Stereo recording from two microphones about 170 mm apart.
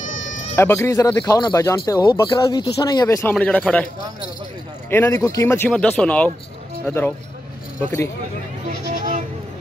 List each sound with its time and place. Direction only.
0.6 s speech: 15° left (ahead or behind)
4.8 s speech: 15° left (ahead or behind)
8.9 s a sound: 50° right (ahead or behind)